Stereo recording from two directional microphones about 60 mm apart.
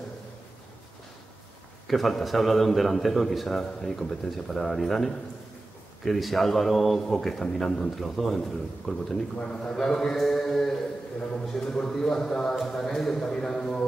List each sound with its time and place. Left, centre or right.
1.9 s a man's voice: centre